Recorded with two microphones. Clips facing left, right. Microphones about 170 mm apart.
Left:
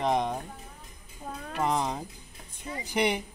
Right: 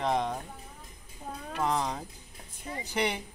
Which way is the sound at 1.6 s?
15° left (ahead or behind).